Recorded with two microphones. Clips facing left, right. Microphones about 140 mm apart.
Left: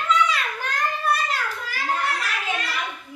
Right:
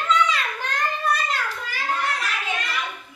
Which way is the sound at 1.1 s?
5° left (ahead or behind).